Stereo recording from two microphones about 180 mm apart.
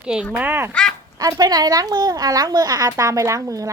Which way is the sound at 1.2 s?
20° right (ahead or behind).